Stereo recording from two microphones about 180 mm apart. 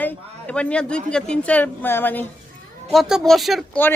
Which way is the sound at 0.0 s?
5° left (ahead or behind).